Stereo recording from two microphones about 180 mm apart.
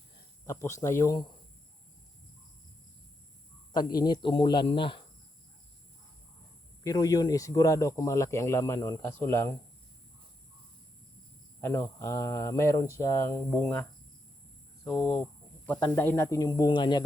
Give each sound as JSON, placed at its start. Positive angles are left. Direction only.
{"t": 0.4, "sound": "speech", "side_deg": 15}
{"t": 3.7, "sound": "speech", "side_deg": 25}
{"t": 6.8, "sound": "speech", "side_deg": 20}
{"t": 11.6, "sound": "speech", "side_deg": 15}
{"t": 14.8, "sound": "speech", "side_deg": 5}